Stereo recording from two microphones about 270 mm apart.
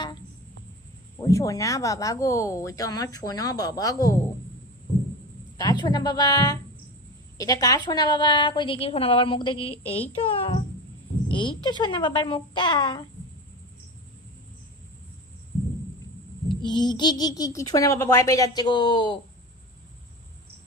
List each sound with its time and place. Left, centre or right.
1.2 s speech: centre
5.5 s a child's voice: centre
16.6 s speech: centre